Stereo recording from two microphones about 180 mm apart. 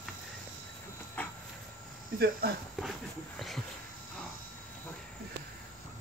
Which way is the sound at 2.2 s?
60° right (ahead or behind).